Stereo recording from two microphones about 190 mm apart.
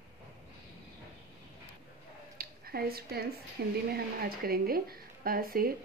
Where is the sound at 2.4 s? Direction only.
50° right (ahead or behind).